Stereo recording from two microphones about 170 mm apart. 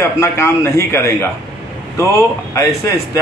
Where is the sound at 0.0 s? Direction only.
15° left (ahead or behind).